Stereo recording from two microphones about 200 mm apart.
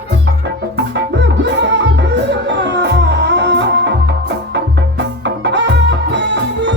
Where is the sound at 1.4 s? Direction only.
60° right (ahead or behind).